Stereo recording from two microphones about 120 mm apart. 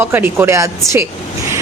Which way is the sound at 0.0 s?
20° right (ahead or behind).